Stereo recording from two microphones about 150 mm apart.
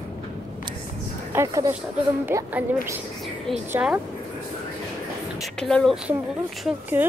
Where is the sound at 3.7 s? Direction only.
5° right (ahead or behind).